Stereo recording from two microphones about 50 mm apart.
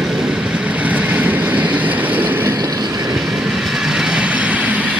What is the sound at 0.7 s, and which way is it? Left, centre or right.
Vehicle, right.